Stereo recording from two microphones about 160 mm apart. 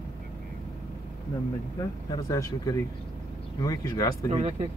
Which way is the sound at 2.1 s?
20° left (ahead or behind).